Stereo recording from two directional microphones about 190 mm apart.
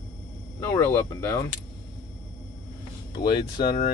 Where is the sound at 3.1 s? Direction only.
20° left (ahead or behind).